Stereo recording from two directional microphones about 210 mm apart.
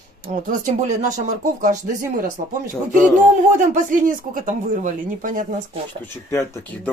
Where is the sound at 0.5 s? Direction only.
35° right (ahead or behind).